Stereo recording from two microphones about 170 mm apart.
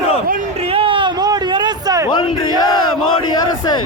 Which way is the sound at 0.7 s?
30° right (ahead or behind).